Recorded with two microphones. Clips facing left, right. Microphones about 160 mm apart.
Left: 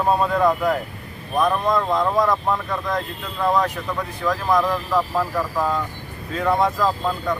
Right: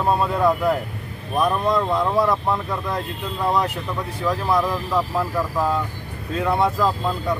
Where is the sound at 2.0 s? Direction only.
5° right (ahead or behind).